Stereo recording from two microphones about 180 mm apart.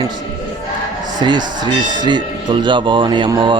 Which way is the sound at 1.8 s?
45° right (ahead or behind).